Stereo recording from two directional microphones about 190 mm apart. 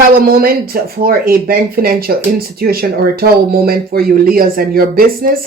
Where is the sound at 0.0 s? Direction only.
50° right (ahead or behind).